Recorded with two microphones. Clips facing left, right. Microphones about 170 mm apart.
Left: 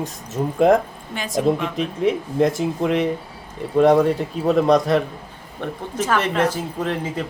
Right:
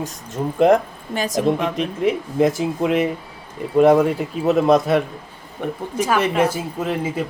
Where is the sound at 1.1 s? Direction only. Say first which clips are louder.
Right 3 dB; 40° right (ahead or behind).